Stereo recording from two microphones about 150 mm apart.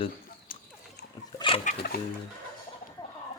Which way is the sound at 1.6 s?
85° left.